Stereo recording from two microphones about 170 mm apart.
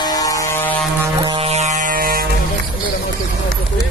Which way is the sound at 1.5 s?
45° right (ahead or behind).